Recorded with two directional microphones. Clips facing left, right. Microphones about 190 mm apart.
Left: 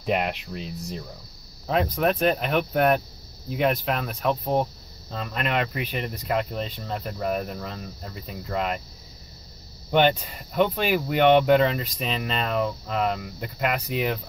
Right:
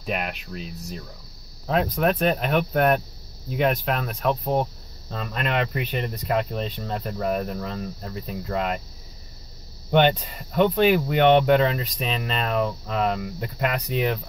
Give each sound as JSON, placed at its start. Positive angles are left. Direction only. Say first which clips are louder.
{"t": 0.0, "sound": "speech", "louder": "left 4 dB", "side_deg": 20}
{"t": 1.7, "sound": "speech", "louder": "right 1 dB", "side_deg": 0}
{"t": 9.9, "sound": "speech", "louder": "right 1 dB", "side_deg": 5}